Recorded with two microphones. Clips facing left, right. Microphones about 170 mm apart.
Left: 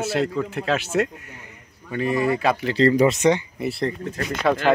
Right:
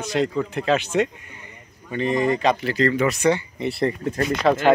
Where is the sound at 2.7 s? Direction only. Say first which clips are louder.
Left 3 dB; 35° left (ahead or behind).